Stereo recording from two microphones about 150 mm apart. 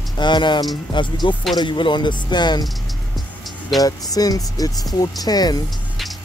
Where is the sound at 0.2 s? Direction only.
30° left (ahead or behind).